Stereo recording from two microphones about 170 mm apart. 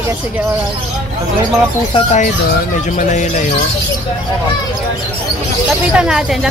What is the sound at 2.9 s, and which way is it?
Speech, 45° left (ahead or behind).